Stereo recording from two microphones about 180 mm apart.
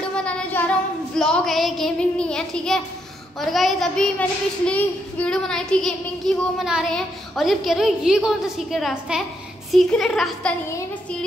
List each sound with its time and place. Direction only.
0.0 s child singing: 5° left (ahead or behind)
1.1 s a child's voice: 5° left (ahead or behind)